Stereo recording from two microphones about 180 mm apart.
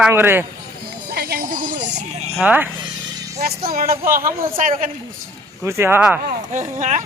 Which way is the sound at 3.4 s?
55° right (ahead or behind).